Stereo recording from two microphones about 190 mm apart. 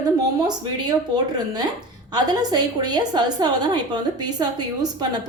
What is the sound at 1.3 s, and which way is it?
A woman's voice, 20° right (ahead or behind).